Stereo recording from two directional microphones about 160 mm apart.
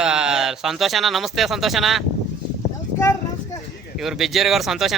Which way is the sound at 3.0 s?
20° left (ahead or behind).